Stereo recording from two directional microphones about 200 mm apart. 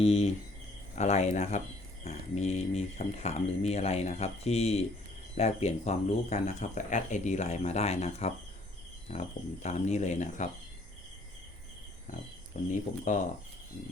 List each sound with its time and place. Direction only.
0.0 s speech: 30° left (ahead or behind)
12.6 s speech: 40° left (ahead or behind)